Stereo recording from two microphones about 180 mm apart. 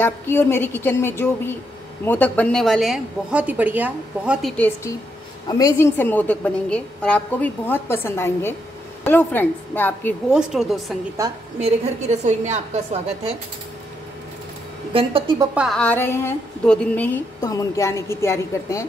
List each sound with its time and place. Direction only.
0.0 s a woman's voice: 15° left (ahead or behind)
10.3 s a woman's voice: 5° right (ahead or behind)
11.6 s a woman's voice: 40° right (ahead or behind)
14.9 s a woman's voice: 30° right (ahead or behind)
15.5 s a woman's voice: 5° right (ahead or behind)
15.8 s a woman's voice: 10° left (ahead or behind)